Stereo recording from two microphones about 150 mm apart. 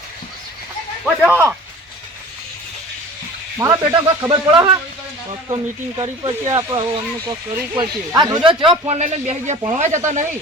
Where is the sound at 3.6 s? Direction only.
25° right (ahead or behind).